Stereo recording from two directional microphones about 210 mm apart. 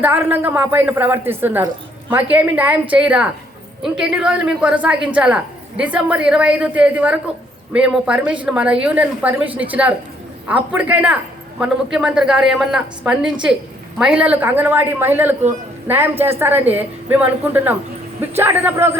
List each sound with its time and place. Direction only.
0.0 s a man's voice: 10° right (ahead or behind)